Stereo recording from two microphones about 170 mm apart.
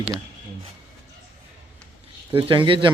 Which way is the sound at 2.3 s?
30° right (ahead or behind).